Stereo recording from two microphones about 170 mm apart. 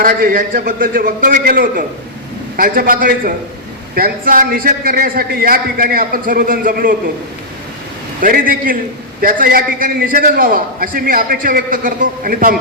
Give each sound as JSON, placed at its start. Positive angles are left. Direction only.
{"t": 0.0, "sound": "a man's voice", "side_deg": -55}
{"t": 8.2, "sound": "a man's voice", "side_deg": -55}